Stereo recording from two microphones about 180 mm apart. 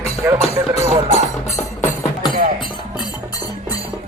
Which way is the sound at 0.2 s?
10° right (ahead or behind).